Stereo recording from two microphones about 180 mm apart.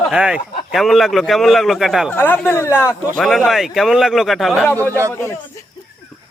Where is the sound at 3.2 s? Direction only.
Centre (ahead or behind).